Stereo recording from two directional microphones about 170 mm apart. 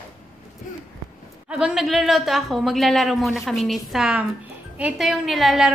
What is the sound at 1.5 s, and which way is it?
A woman's voice, 5° right (ahead or behind).